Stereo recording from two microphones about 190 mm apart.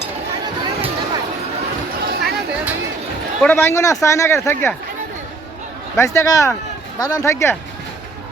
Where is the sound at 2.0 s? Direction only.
55° right (ahead or behind).